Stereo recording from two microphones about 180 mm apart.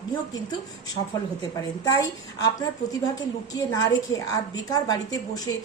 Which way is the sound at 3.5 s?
20° left (ahead or behind).